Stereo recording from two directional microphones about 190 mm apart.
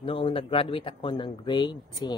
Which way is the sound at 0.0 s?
30° left (ahead or behind).